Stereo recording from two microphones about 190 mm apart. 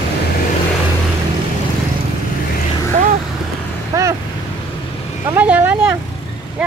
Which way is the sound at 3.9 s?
15° right (ahead or behind).